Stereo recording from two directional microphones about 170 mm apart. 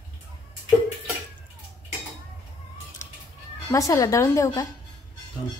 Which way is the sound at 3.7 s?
20° left (ahead or behind).